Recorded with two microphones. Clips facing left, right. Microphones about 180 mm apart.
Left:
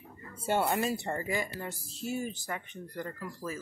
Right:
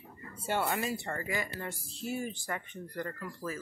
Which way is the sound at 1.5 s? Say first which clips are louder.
Left 1 dB; 15° left (ahead or behind).